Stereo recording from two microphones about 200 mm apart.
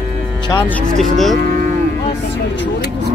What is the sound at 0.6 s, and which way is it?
Speech, 5° left (ahead or behind).